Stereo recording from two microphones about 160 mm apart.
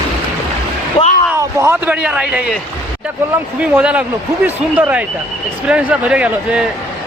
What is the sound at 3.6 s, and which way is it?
Speech, 10° right (ahead or behind).